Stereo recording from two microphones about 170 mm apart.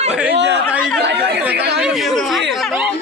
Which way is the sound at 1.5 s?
70° right (ahead or behind).